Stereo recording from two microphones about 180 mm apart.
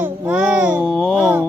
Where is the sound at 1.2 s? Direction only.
10° right (ahead or behind).